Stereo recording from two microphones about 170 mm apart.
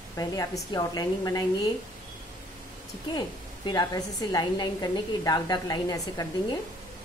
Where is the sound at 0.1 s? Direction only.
20° left (ahead or behind).